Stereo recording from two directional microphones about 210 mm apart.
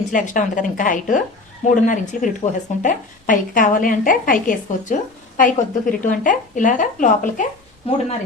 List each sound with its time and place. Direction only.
0.1 s a woman's voice: 40° left (ahead or behind)